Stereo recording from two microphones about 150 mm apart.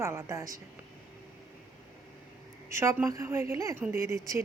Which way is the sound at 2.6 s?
20° right (ahead or behind).